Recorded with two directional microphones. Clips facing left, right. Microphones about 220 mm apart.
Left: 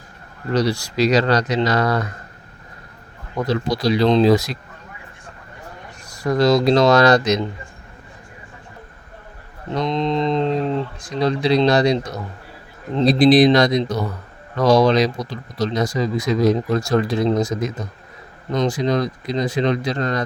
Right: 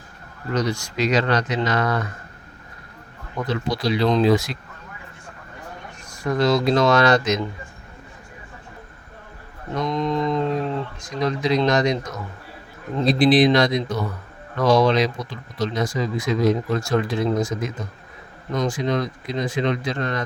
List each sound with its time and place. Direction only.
0.5 s speech: 35° left (ahead or behind)
3.3 s speech: 40° left (ahead or behind)
6.1 s speech: 35° left (ahead or behind)
9.7 s mantra: 25° left (ahead or behind)
11.2 s speech: 30° left (ahead or behind)